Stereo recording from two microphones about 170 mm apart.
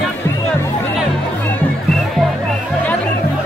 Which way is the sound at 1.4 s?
5° left (ahead or behind).